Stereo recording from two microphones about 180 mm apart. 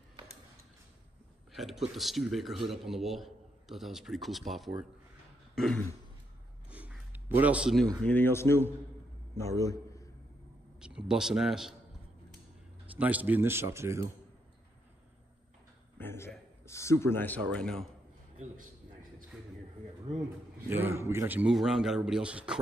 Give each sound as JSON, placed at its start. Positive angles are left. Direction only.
{"t": 1.5, "sound": "speech", "side_deg": 0}
{"t": 5.5, "sound": "throat clearing", "side_deg": 0}
{"t": 6.7, "sound": "a sound", "side_deg": -10}
{"t": 8.0, "sound": "a man's voice", "side_deg": 10}
{"t": 10.8, "sound": "speech", "side_deg": -5}
{"t": 12.9, "sound": "speech", "side_deg": -10}
{"t": 16.0, "sound": "a sound", "side_deg": 10}
{"t": 16.6, "sound": "speech", "side_deg": 15}
{"t": 20.6, "sound": "speech", "side_deg": -10}